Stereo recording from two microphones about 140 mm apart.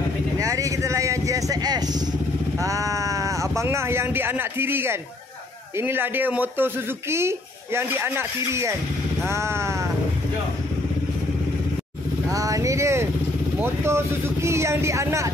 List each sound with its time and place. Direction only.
0.4 s vehicle: 25° right (ahead or behind)
2.6 s a sound: 25° right (ahead or behind)
5.8 s speech: 15° right (ahead or behind)
12.3 s vehicle: 25° right (ahead or behind)
13.6 s speech: 20° right (ahead or behind)